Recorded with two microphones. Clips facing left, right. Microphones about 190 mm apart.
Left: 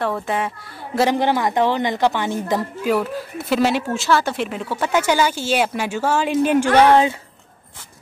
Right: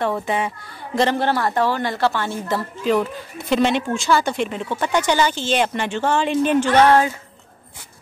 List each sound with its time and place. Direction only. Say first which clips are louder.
0.0 s speech: right 1 dB; centre (ahead or behind)
0.9 s speech: left 1 dB; 10° left (ahead or behind)